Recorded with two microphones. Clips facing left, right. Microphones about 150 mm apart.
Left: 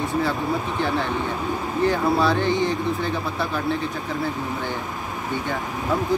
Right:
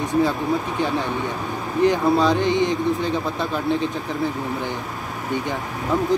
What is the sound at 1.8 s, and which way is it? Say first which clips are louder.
Speech: right 3 dB; 15° right (ahead or behind).